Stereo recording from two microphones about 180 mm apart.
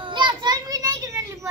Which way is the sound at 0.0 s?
25° right (ahead or behind).